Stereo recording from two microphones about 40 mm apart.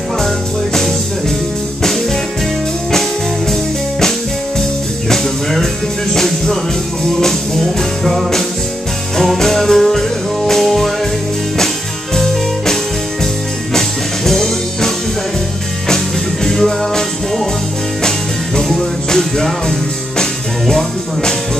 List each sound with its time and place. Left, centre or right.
2.9 s music: centre
5.1 s music: centre
13.7 s music: centre
16.4 s music: centre
18.6 s music: centre